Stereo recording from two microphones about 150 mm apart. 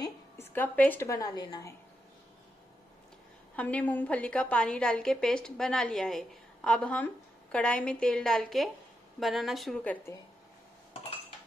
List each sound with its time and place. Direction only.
0.0 s a woman's voice: 15° left (ahead or behind)
3.5 s a woman's voice: 10° left (ahead or behind)